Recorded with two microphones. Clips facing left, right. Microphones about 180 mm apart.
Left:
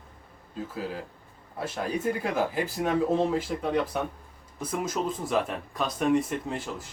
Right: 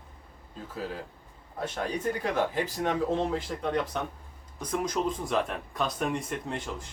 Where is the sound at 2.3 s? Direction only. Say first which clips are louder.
Left 1 dB; 5° left (ahead or behind).